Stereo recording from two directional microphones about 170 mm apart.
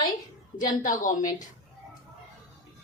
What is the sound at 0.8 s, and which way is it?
Speech, 50° left (ahead or behind).